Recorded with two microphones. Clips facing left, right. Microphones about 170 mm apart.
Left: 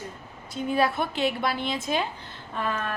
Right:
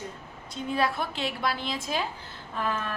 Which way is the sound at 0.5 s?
Centre (ahead or behind).